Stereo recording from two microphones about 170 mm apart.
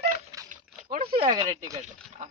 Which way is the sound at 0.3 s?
20° right (ahead or behind).